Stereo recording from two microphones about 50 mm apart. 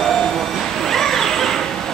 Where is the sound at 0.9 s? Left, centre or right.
Centre.